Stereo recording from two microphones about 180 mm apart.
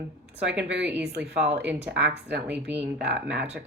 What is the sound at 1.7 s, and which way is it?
Speech, 10° right (ahead or behind).